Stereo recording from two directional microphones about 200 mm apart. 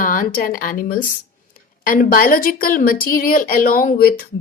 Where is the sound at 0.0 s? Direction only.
40° left (ahead or behind).